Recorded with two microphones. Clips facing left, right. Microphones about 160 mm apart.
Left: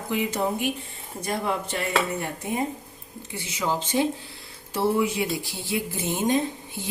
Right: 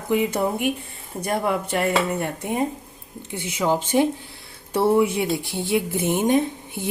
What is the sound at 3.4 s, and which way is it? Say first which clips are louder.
A woman's voice: right 5 dB; 55° right (ahead or behind).